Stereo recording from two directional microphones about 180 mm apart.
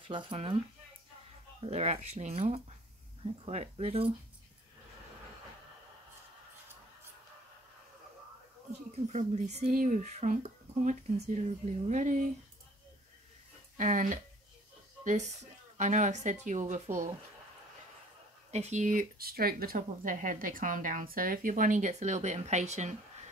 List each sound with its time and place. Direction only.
0.0 s speech: 30° right (ahead or behind)
1.6 s speech: 35° right (ahead or behind)
9.0 s speech: 40° right (ahead or behind)
13.7 s speech: 45° right (ahead or behind)
18.5 s speech: 40° right (ahead or behind)